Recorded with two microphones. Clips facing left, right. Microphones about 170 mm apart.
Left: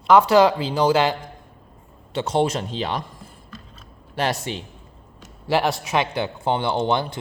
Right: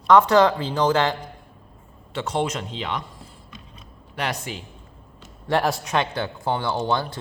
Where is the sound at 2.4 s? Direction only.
35° left (ahead or behind).